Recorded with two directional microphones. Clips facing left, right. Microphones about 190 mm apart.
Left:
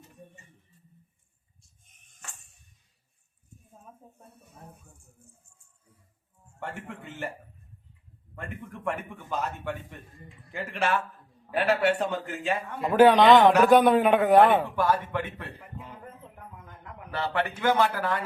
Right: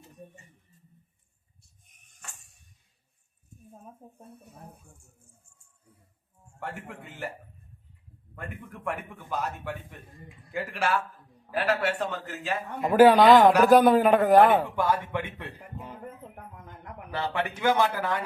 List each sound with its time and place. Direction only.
9.0 s a man's voice: 10° right (ahead or behind)
14.8 s a man's voice: 15° right (ahead or behind)
17.4 s a man's voice: 10° right (ahead or behind)